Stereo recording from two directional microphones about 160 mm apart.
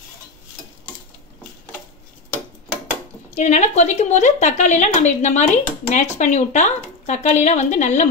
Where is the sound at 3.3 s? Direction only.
45° left (ahead or behind).